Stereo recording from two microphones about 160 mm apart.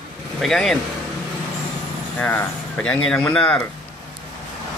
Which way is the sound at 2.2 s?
10° left (ahead or behind).